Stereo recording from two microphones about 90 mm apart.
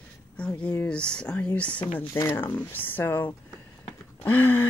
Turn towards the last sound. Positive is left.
turn(degrees=20)  # may be behind; listen again after turning